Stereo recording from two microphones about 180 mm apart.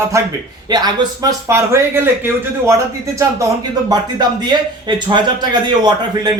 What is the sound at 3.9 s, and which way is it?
Speech, 25° right (ahead or behind).